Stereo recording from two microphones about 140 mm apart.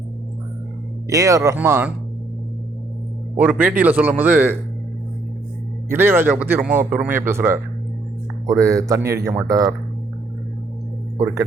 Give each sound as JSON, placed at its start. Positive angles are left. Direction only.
{"t": 1.1, "sound": "a man's voice", "side_deg": -25}
{"t": 3.3, "sound": "a man's voice", "side_deg": -10}
{"t": 5.9, "sound": "a man's voice", "side_deg": -15}